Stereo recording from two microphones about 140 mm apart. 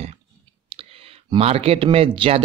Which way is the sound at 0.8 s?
45° right (ahead or behind).